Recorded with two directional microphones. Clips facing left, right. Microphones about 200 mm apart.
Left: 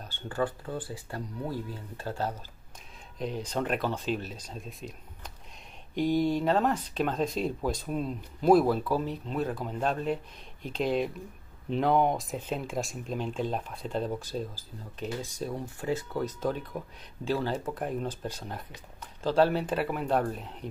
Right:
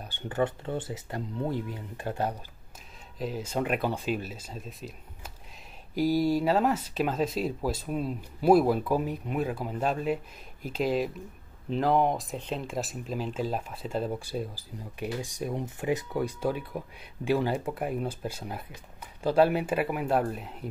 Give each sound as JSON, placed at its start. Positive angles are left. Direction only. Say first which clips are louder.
{"t": 0.0, "sound": "speech", "louder": "right 2 dB", "side_deg": -15}
{"t": 3.2, "sound": "speech", "louder": "right 1 dB", "side_deg": -5}